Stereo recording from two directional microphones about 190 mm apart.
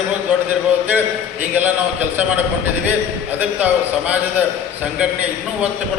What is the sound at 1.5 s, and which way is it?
Speech, 10° right (ahead or behind).